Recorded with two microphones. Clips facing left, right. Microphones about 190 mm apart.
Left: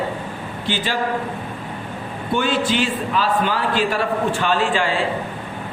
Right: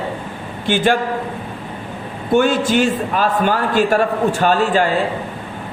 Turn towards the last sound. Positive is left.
turn(degrees=-45)  # may be behind; listen again after turning